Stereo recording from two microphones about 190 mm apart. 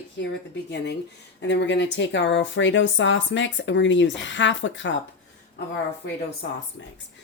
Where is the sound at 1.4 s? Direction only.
70° left (ahead or behind).